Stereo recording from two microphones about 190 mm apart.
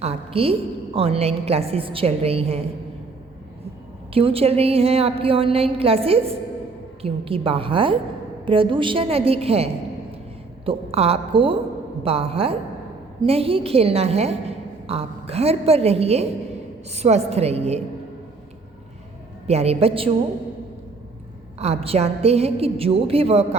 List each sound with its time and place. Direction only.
0.0 s a woman's voice: 30° right (ahead or behind)
4.1 s a woman's voice: 30° right (ahead or behind)
10.7 s a woman's voice: 30° right (ahead or behind)
19.5 s a woman's voice: 35° right (ahead or behind)
21.6 s a woman's voice: 30° right (ahead or behind)